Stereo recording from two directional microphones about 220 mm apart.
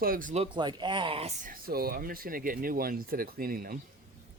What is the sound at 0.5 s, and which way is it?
Speech, 20° right (ahead or behind).